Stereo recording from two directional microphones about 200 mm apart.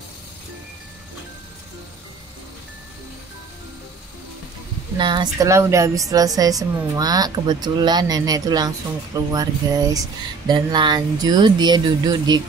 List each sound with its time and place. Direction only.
4.9 s a woman's voice: 20° right (ahead or behind)